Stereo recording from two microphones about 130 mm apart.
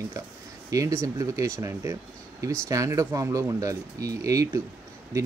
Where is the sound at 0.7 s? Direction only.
25° right (ahead or behind).